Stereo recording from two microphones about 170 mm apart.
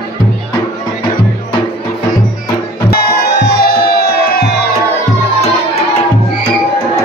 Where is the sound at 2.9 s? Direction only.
70° left (ahead or behind).